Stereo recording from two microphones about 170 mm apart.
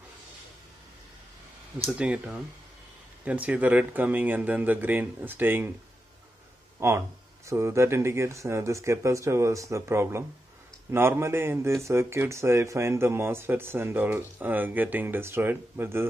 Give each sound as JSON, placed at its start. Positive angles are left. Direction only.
{"t": 2.0, "sound": "speech", "side_deg": -10}
{"t": 6.8, "sound": "speech", "side_deg": -15}